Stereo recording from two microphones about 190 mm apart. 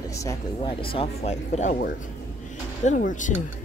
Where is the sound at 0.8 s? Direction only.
30° left (ahead or behind).